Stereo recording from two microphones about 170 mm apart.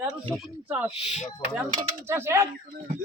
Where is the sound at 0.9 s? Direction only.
40° left (ahead or behind).